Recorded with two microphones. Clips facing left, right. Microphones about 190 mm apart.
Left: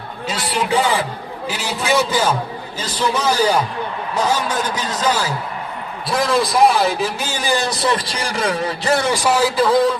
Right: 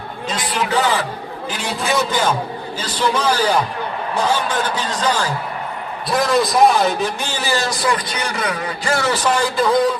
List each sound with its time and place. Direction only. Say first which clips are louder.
0.3 s a man's voice: left 1 dB; 10° left (ahead or behind)
7.3 s speech: left 2 dB; 15° left (ahead or behind)
7.9 s a man's voice: even; 30° left (ahead or behind); by 9.9 s centre (ahead or behind)